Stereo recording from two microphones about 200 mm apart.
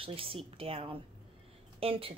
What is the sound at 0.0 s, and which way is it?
Speech, 25° right (ahead or behind).